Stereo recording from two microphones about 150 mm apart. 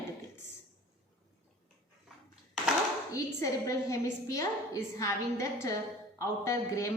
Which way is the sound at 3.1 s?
20° left (ahead or behind).